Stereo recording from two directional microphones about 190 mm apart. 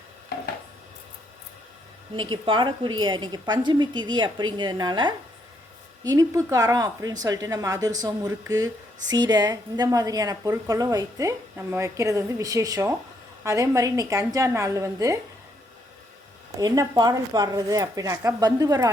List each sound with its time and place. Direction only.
2.1 s a woman's voice: 25° right (ahead or behind)
16.6 s a woman's voice: 20° right (ahead or behind)